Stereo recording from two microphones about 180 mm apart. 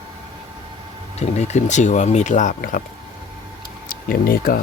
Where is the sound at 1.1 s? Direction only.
40° left (ahead or behind).